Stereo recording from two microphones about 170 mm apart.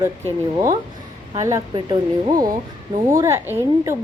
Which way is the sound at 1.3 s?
20° right (ahead or behind).